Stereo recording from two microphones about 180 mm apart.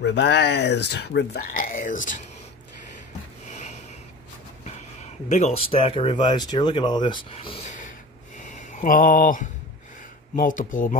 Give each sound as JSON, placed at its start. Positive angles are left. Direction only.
{"t": 0.0, "sound": "speech", "side_deg": 80}
{"t": 3.4, "sound": "snort", "side_deg": 40}
{"t": 5.3, "sound": "speech", "side_deg": 35}
{"t": 8.4, "sound": "a sound", "side_deg": 45}
{"t": 10.3, "sound": "speech", "side_deg": 50}